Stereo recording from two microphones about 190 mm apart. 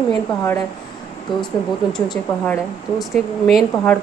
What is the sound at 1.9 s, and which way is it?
Speech, 5° left (ahead or behind).